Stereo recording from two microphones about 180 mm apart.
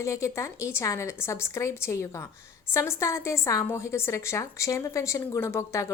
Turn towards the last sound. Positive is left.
turn(degrees=15)  # may be behind; listen again after turning